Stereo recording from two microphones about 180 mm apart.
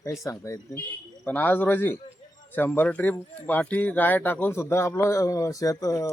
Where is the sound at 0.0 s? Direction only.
15° left (ahead or behind).